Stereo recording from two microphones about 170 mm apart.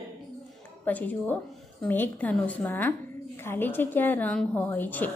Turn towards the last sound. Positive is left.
turn(degrees=10)  # may be behind; listen again after turning